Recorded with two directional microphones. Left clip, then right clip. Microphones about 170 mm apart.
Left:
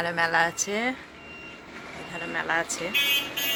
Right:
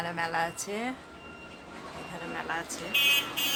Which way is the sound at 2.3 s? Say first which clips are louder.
Left 8 dB; 15° left (ahead or behind).